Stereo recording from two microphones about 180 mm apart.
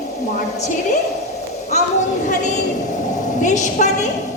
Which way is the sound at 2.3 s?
40° left (ahead or behind).